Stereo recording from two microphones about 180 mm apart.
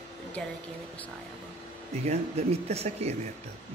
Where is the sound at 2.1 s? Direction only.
35° right (ahead or behind).